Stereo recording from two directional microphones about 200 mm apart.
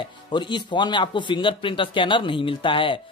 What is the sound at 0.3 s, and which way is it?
Speech, 25° left (ahead or behind).